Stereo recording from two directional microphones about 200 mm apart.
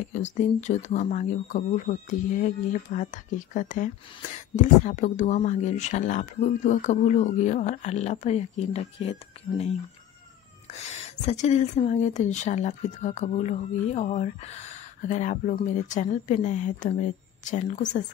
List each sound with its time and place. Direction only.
0.1 s speech: 35° left (ahead or behind)